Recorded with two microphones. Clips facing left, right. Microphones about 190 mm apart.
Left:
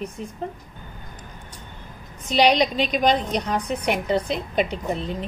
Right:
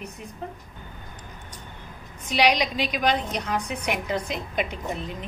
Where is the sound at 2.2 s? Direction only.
30° left (ahead or behind).